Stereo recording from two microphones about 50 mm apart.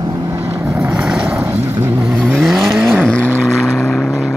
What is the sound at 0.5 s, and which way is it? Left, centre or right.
Vehicle, right.